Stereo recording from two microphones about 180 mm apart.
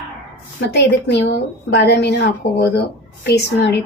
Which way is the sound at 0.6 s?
65° left (ahead or behind).